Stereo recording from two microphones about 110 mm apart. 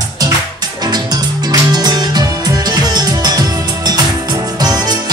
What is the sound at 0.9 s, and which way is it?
Music, 40° right (ahead or behind).